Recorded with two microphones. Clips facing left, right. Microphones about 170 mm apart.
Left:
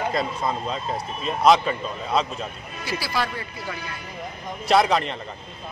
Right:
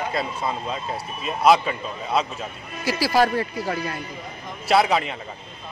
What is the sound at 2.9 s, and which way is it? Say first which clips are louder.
Speech: right 8 dB; 40° right (ahead or behind).